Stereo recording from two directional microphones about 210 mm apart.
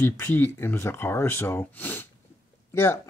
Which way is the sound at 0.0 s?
10° left (ahead or behind).